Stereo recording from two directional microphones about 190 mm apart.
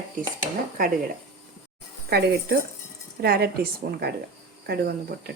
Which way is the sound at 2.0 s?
55° right (ahead or behind).